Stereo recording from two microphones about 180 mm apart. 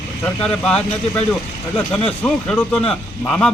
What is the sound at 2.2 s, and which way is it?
Speech, 5° left (ahead or behind).